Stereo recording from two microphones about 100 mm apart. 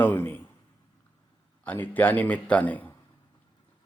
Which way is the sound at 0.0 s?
20° left (ahead or behind).